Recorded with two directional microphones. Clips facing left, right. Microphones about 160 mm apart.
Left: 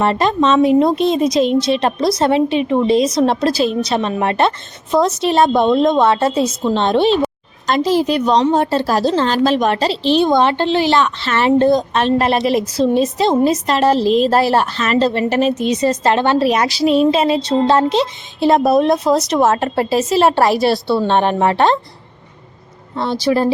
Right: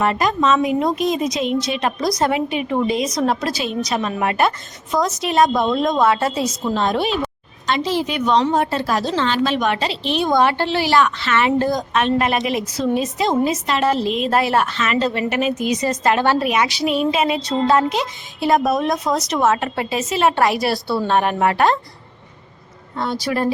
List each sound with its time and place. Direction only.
0.0 s a woman's voice: 30° left (ahead or behind)
7.7 s a woman's voice: 40° left (ahead or behind); by 16.5 s 25° left (ahead or behind)
16.5 s a woman's voice: 35° left (ahead or behind)
23.2 s a woman's voice: 30° left (ahead or behind)